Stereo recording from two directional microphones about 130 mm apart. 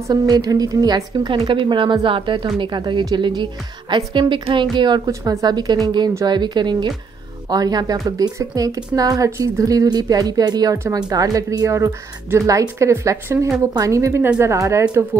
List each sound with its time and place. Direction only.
0.1 s a woman's voice: 30° right (ahead or behind)